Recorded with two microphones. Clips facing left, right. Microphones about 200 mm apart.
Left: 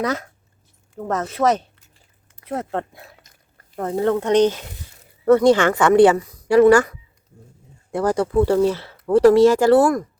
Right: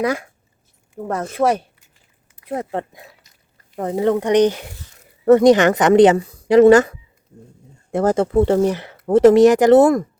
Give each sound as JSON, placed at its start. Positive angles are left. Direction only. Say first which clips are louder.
{"t": 0.0, "sound": "a woman's voice", "louder": "right 3 dB", "side_deg": -10}